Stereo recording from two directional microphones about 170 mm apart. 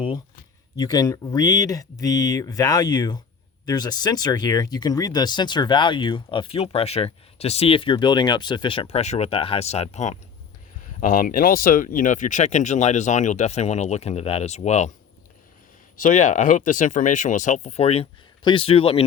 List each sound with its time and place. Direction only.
0.8 s speech: 20° left (ahead or behind); by 10.2 s 45° left (ahead or behind)
11.0 s speech: 55° left (ahead or behind)
16.0 s speech: 50° left (ahead or behind)